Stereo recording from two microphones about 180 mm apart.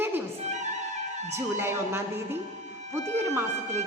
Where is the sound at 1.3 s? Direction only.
15° right (ahead or behind).